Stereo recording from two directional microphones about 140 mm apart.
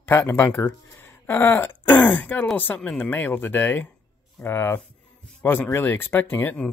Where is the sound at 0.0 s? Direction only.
15° left (ahead or behind).